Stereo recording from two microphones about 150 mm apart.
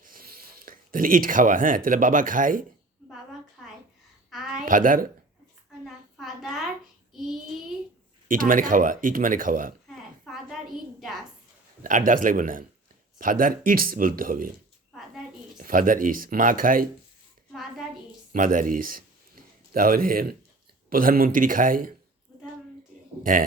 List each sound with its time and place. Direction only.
0.0 s speech: 75° right (ahead or behind)
4.3 s a sound: centre (ahead or behind)
4.6 s a woman's voice: 65° right (ahead or behind)
5.8 s a sound: centre (ahead or behind)
7.1 s child singing: centre (ahead or behind)
8.3 s speech: 65° right (ahead or behind)
10.2 s a sound: centre (ahead or behind)
11.8 s speech: 60° right (ahead or behind)
15.5 s speech: 65° right (ahead or behind)
17.5 s a sound: centre (ahead or behind)
18.3 s speech: 60° right (ahead or behind)
23.3 s speech: 65° right (ahead or behind)